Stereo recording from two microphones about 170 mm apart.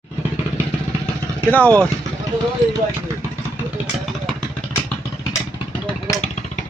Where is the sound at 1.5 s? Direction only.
10° left (ahead or behind).